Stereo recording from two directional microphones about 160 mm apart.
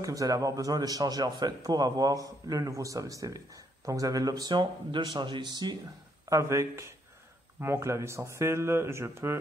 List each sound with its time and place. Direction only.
0.0 s a man's voice: 20° right (ahead or behind)